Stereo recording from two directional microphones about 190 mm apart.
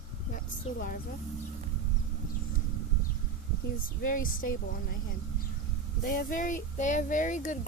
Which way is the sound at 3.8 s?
45° left (ahead or behind).